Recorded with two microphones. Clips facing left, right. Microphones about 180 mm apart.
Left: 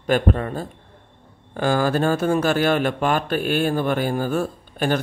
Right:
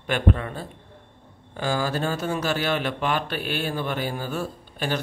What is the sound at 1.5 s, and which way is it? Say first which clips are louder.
Speech: left 6 dB; 55° left (ahead or behind).